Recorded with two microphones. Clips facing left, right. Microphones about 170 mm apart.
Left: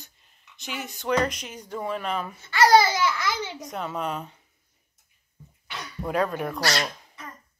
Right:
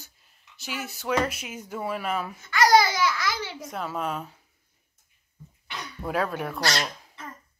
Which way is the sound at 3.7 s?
Centre (ahead or behind).